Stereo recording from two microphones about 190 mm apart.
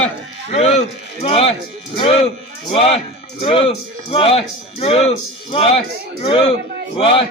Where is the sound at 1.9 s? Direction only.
30° left (ahead or behind).